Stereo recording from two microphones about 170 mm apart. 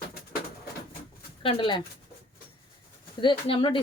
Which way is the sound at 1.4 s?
30° left (ahead or behind).